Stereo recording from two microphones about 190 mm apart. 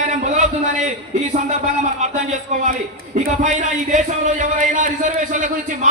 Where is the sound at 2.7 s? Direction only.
40° right (ahead or behind).